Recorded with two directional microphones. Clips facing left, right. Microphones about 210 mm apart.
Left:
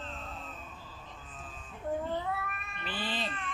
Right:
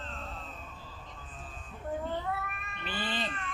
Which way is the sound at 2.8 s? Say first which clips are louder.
Right 1 dB; centre (ahead or behind).